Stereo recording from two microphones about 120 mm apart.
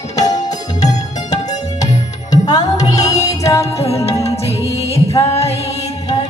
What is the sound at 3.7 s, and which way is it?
Music, 55° left (ahead or behind).